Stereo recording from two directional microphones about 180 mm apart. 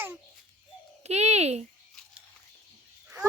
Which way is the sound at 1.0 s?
35° right (ahead or behind).